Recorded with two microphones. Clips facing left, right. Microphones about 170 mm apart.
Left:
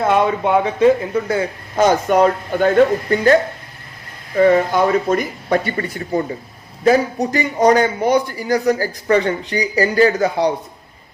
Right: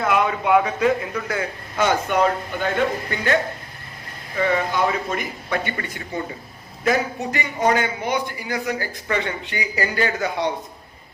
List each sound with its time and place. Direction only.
0.0 s a man's voice: 30° left (ahead or behind)
4.4 s a man's voice: 45° left (ahead or behind)